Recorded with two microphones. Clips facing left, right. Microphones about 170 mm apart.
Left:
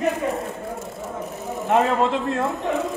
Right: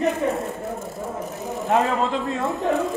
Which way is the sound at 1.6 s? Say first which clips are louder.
Left 2 dB; centre (ahead or behind).